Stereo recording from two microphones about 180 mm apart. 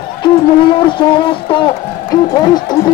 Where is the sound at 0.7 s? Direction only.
30° left (ahead or behind).